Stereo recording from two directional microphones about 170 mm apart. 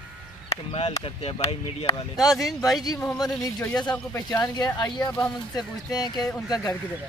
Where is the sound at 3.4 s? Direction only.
10° left (ahead or behind).